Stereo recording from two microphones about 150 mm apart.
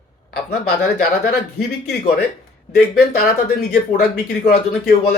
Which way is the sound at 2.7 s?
90° left.